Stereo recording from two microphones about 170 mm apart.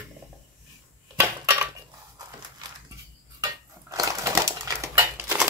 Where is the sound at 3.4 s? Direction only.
20° right (ahead or behind).